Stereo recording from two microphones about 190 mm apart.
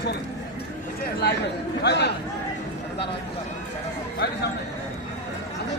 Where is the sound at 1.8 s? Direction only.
65° left (ahead or behind).